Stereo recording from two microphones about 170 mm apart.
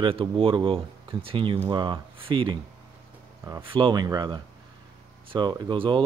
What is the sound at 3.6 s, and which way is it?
Speech, 30° right (ahead or behind).